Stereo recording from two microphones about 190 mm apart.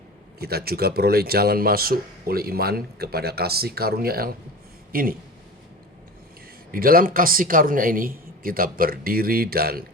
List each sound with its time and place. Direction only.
0.3 s a man's voice: 55° right (ahead or behind)
6.7 s speech: 50° right (ahead or behind)